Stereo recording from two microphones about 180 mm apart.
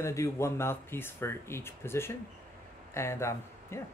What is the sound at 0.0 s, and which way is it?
Speech, 15° left (ahead or behind).